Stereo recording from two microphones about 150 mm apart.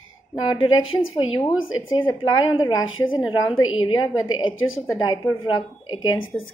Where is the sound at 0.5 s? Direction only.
35° left (ahead or behind).